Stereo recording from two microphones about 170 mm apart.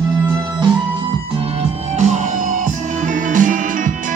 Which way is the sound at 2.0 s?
45° right (ahead or behind).